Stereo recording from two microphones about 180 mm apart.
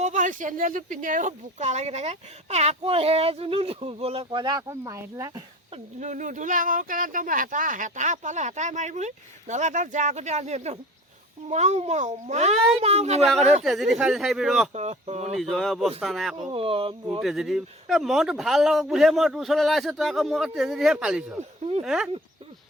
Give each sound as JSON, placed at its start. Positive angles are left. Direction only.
{"t": 0.0, "sound": "speech", "side_deg": -45}
{"t": 5.7, "sound": "speech", "side_deg": -40}
{"t": 13.2, "sound": "a man's voice", "side_deg": 0}
{"t": 14.7, "sound": "speech", "side_deg": -40}
{"t": 15.5, "sound": "a man's voice", "side_deg": 0}
{"t": 16.4, "sound": "speech", "side_deg": -30}
{"t": 17.2, "sound": "a man's voice", "side_deg": 0}
{"t": 21.6, "sound": "speech", "side_deg": -35}
{"t": 21.8, "sound": "a man's voice", "side_deg": 0}